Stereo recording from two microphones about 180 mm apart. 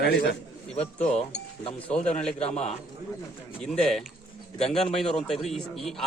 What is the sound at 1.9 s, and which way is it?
Speech, 5° left (ahead or behind).